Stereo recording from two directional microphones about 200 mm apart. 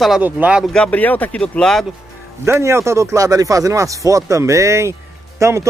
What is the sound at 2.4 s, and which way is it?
A man's voice, 15° right (ahead or behind).